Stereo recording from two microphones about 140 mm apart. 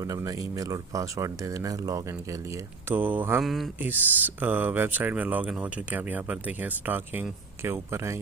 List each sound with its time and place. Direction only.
0.0 s speech: 25° right (ahead or behind)
2.9 s speech: 15° right (ahead or behind)
3.4 s speech: centre (ahead or behind)
3.8 s speech: 10° right (ahead or behind)